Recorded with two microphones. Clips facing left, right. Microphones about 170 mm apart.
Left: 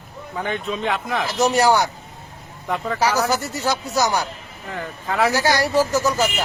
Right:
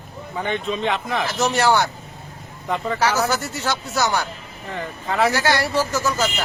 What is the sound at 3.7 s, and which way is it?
Speech, 15° left (ahead or behind).